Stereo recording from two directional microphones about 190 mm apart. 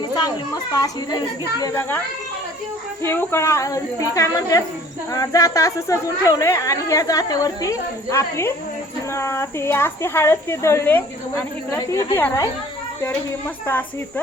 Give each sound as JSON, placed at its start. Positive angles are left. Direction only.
{"t": 0.2, "sound": "a child's voice", "side_deg": 20}
{"t": 3.0, "sound": "speech", "side_deg": 10}